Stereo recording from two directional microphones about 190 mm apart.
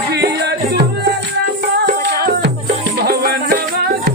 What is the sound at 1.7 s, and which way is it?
Music, 60° right (ahead or behind).